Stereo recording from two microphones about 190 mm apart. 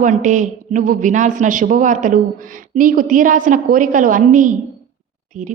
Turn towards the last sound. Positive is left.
turn(degrees=-40)  # may be behind; listen again after turning